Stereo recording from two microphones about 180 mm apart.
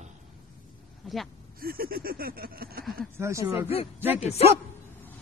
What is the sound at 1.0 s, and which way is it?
Speech, centre (ahead or behind).